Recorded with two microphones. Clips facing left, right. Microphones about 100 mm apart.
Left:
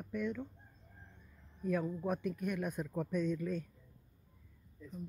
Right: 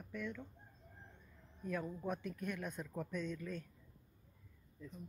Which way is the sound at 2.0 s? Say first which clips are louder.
Left 5 dB; 15° left (ahead or behind).